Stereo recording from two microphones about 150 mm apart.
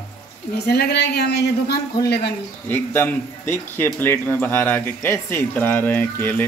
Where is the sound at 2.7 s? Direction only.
15° left (ahead or behind).